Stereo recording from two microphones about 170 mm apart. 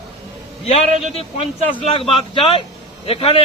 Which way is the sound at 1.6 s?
35° left (ahead or behind).